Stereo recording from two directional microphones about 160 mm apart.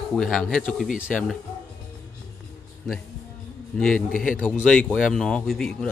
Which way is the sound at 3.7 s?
5° left (ahead or behind).